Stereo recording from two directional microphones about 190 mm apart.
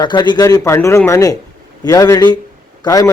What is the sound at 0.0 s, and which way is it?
A man's voice, 20° left (ahead or behind).